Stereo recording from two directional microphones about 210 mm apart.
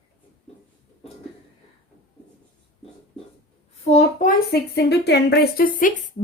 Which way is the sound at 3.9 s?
40° left (ahead or behind).